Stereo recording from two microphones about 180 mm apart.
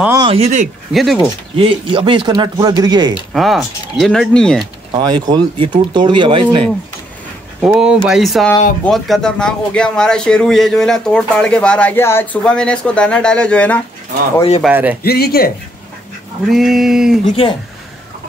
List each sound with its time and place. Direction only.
0.2 s speech: 35° right (ahead or behind)
0.9 s a man's voice: centre (ahead or behind)
1.6 s speech: 30° right (ahead or behind)
3.3 s a man's voice: centre (ahead or behind)
4.9 s speech: 25° right (ahead or behind)
7.6 s a man's voice: 5° right (ahead or behind)
14.7 s speech: 10° right (ahead or behind)
15.0 s speech: 60° left (ahead or behind)
16.4 s a man's voice: centre (ahead or behind)